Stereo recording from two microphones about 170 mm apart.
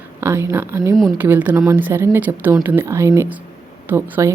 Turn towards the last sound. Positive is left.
turn(degrees=-15)  # may be behind; listen again after turning